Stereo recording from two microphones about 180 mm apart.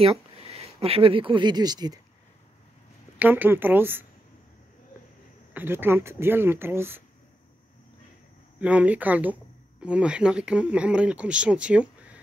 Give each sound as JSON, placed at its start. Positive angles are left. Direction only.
{"t": 0.0, "sound": "speech", "side_deg": -35}
{"t": 3.2, "sound": "speech", "side_deg": -10}
{"t": 5.5, "sound": "speech", "side_deg": -10}
{"t": 8.5, "sound": "speech", "side_deg": -5}